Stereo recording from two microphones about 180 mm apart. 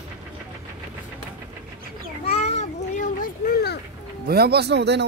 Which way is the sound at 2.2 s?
35° left (ahead or behind).